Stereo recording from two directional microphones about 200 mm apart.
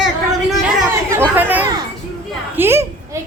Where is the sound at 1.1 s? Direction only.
10° right (ahead or behind).